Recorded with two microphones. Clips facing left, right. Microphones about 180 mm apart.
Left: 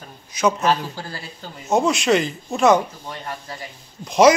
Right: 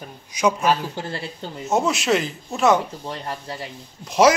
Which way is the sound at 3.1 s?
30° right (ahead or behind).